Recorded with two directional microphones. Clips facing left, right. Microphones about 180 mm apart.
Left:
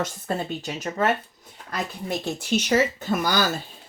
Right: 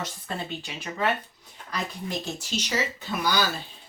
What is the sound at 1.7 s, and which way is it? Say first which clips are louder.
Speech: left 3 dB; 55° left (ahead or behind).